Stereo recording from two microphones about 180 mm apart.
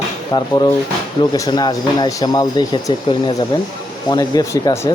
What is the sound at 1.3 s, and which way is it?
Speech, 25° left (ahead or behind).